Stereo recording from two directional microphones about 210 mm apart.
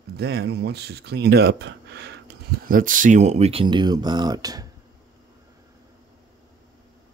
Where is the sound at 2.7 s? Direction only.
40° right (ahead or behind); by 4.6 s 15° right (ahead or behind).